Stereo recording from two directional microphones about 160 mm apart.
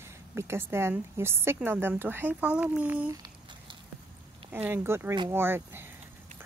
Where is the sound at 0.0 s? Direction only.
15° right (ahead or behind).